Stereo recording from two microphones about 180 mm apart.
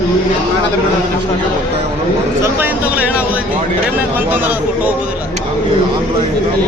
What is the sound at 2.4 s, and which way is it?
Speech, 10° right (ahead or behind).